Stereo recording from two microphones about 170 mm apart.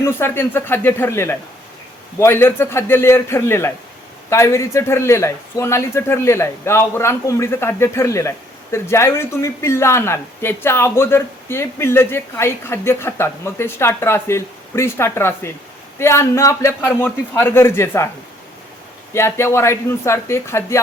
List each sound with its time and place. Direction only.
0.0 s speech: 15° left (ahead or behind)
19.1 s speech: 15° left (ahead or behind)